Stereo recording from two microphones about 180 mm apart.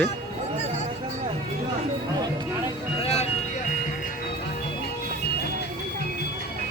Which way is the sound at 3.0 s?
35° left (ahead or behind).